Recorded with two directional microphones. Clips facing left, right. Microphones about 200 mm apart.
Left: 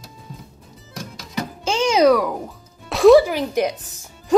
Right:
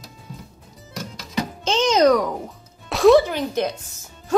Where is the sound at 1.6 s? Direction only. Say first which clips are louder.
Left 1 dB; 10° left (ahead or behind).